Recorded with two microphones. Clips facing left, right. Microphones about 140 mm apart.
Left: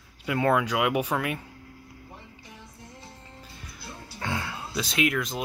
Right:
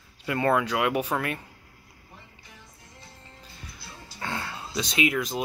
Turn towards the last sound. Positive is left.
turn(degrees=0)  # may be behind; listen again after turning